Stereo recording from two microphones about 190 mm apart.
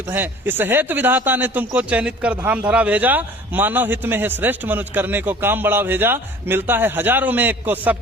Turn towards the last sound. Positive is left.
turn(degrees=-10)  # may be behind; listen again after turning